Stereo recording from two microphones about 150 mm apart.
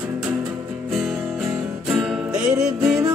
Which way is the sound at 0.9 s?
5° right (ahead or behind).